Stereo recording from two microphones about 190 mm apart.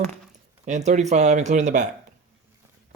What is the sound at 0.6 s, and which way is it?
Speech, 40° right (ahead or behind).